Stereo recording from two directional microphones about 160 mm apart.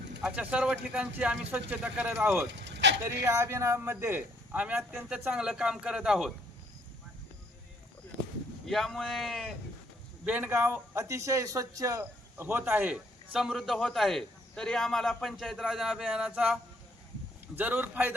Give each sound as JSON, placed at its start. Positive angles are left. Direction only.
{"t": 0.2, "sound": "a man's voice", "side_deg": -5}
{"t": 2.5, "sound": "vehicle", "side_deg": -90}
{"t": 3.2, "sound": "a man's voice", "side_deg": -15}
{"t": 8.6, "sound": "a man's voice", "side_deg": 0}